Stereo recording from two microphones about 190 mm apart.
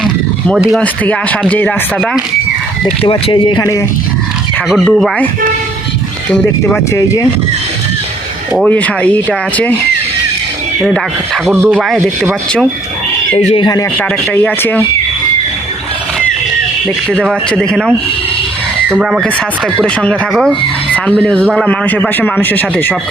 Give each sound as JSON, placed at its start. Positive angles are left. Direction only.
{"t": 0.0, "sound": "speech", "side_deg": 0}
{"t": 2.8, "sound": "speech", "side_deg": 30}
{"t": 4.7, "sound": "speech", "side_deg": 0}
{"t": 6.3, "sound": "a man's voice", "side_deg": 10}
{"t": 8.5, "sound": "a man's voice", "side_deg": 5}
{"t": 11.5, "sound": "speech", "side_deg": -10}
{"t": 13.3, "sound": "speech", "side_deg": 30}
{"t": 14.3, "sound": "a man's voice", "side_deg": 10}
{"t": 17.1, "sound": "a man's voice", "side_deg": -5}